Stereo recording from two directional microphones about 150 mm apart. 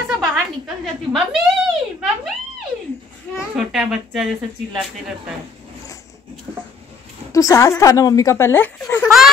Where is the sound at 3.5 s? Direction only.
Centre (ahead or behind).